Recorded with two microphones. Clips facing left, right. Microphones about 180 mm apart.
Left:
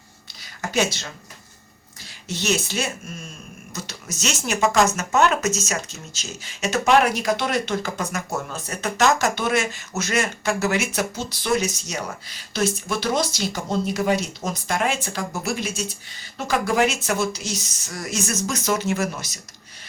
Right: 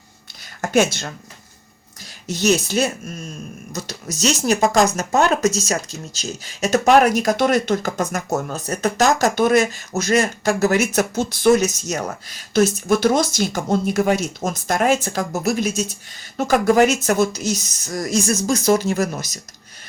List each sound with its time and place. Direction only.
0.6 s speech: 50° right (ahead or behind)
2.2 s speech: 40° right (ahead or behind)